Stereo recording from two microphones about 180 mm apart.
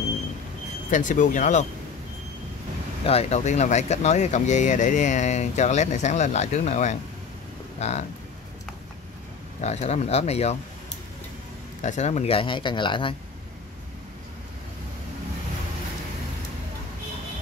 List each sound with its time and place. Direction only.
0.8 s speech: 45° left (ahead or behind)
3.1 s speech: 35° left (ahead or behind)
9.6 s speech: 40° left (ahead or behind)
11.8 s speech: 40° left (ahead or behind)